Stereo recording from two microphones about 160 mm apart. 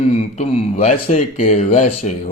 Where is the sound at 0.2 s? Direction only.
45° left (ahead or behind).